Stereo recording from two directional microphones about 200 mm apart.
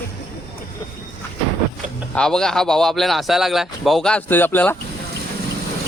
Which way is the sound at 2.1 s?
5° left (ahead or behind).